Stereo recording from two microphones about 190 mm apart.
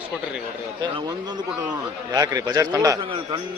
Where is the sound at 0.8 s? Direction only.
20° right (ahead or behind).